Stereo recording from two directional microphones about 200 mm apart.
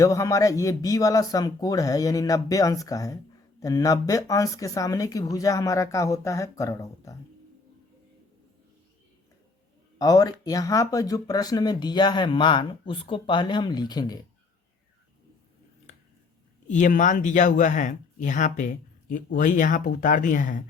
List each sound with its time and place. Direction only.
0.0 s speech: 15° left (ahead or behind)
10.0 s speech: 20° left (ahead or behind)
16.6 s speech: 40° left (ahead or behind)